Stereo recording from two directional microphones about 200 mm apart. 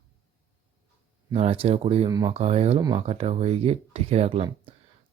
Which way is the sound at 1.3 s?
30° right (ahead or behind).